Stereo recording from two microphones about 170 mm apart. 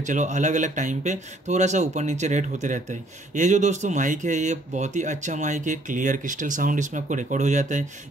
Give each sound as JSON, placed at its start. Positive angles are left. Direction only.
{"t": 0.0, "sound": "speech", "side_deg": -45}